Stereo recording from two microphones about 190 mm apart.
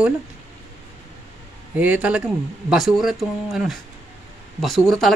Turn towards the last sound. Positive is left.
turn(degrees=0)  # may be behind; listen again after turning